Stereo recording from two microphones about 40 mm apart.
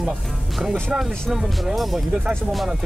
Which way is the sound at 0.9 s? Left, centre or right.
Right.